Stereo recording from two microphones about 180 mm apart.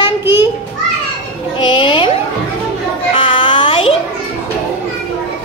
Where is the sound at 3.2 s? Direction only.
25° left (ahead or behind).